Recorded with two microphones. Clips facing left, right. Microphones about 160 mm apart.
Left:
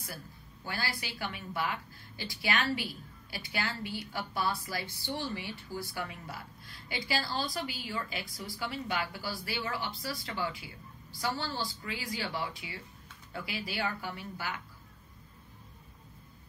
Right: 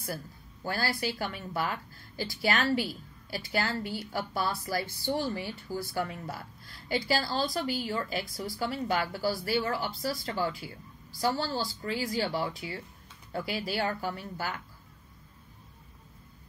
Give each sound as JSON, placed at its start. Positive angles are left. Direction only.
{"t": 0.7, "sound": "a woman's voice", "side_deg": -40}